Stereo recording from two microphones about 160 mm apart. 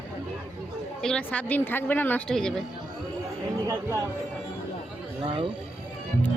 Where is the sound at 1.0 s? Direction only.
5° left (ahead or behind).